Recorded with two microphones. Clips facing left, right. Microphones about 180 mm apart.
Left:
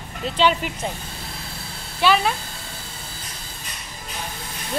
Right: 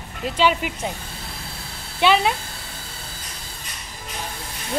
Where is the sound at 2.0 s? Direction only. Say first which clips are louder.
Right 1 dB; 20° right (ahead or behind).